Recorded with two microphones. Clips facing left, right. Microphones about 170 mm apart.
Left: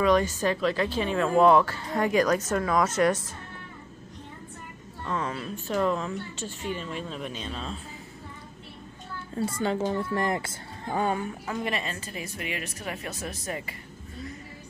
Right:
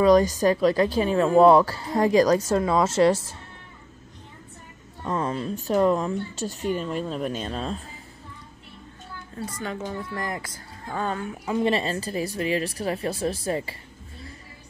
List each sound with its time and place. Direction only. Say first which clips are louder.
0.0 s speech: right 5 dB; 35° right (ahead or behind)
5.0 s speech: right 4 dB; 35° right (ahead or behind)
9.4 s speech: left 5 dB; 30° left (ahead or behind)
11.0 s speech: left 1 dB; 10° left (ahead or behind)
11.6 s speech: right 10 dB; 30° right (ahead or behind)